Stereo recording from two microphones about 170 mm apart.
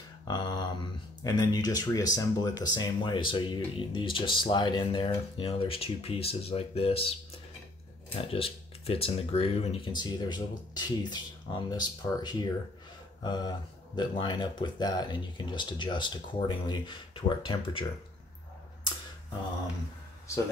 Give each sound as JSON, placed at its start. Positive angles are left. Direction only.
{"t": 0.3, "sound": "a sound", "side_deg": 25}
{"t": 1.2, "sound": "speech", "side_deg": 20}
{"t": 8.2, "sound": "speech", "side_deg": 35}